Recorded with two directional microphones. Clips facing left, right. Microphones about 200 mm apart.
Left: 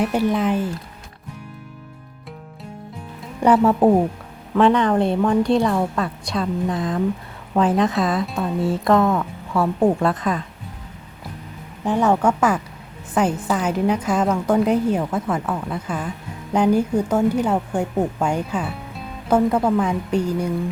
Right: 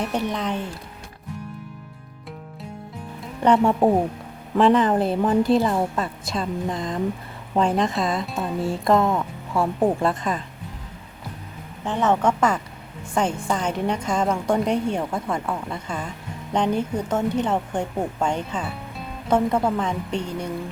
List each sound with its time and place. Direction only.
0.0 s a woman's voice: 5° left (ahead or behind)
3.2 s a woman's voice: 5° left (ahead or behind)
11.9 s a woman's voice: 10° left (ahead or behind)